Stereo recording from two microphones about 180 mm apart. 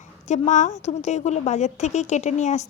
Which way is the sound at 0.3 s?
40° left (ahead or behind).